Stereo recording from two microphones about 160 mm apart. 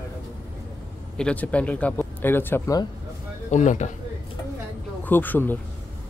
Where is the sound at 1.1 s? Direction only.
5° left (ahead or behind).